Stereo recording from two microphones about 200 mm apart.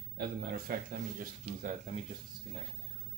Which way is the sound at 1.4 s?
35° right (ahead or behind).